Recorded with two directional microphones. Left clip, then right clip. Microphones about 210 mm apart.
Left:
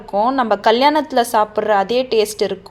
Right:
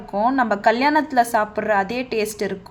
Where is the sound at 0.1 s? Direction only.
20° left (ahead or behind).